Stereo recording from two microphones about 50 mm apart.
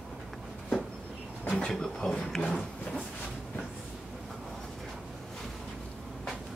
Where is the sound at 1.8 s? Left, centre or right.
Centre.